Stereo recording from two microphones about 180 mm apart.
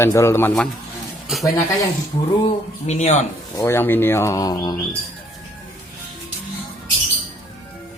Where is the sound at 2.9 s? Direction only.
40° left (ahead or behind).